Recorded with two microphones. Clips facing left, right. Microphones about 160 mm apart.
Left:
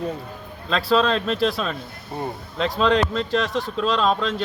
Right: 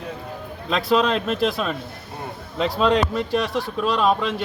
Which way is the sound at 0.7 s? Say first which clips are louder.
Even; 20° right (ahead or behind).